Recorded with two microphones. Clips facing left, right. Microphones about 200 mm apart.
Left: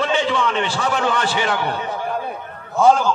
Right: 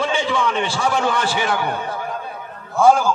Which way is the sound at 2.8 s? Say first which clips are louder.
Even; 10° right (ahead or behind).